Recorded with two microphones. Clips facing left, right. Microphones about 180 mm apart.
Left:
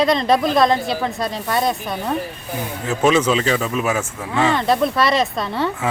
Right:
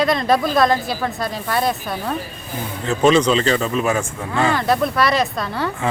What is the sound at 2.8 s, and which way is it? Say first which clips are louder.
Speech: right 2 dB; 5° left (ahead or behind).